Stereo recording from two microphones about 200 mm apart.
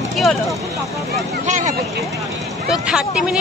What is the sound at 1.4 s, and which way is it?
Speech, 35° right (ahead or behind).